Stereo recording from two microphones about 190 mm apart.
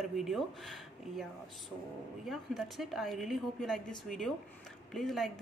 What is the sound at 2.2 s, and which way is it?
A woman's voice, centre (ahead or behind).